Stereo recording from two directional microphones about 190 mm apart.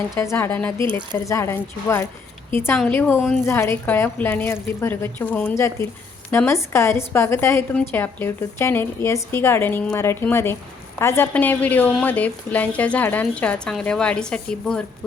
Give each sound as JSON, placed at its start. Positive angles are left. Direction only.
{"t": 0.2, "sound": "a woman's voice", "side_deg": 15}